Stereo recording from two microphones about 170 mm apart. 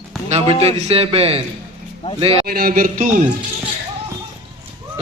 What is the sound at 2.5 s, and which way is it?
Speech, 60° right (ahead or behind).